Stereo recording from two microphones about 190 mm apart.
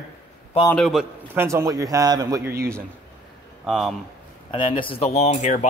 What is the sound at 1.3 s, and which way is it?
A man's voice, 15° right (ahead or behind).